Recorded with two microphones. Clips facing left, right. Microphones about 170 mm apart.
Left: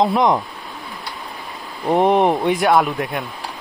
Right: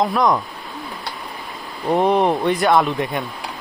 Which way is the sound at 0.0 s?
20° left (ahead or behind).